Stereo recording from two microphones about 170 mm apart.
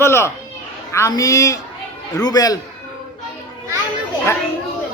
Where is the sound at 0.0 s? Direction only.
15° left (ahead or behind).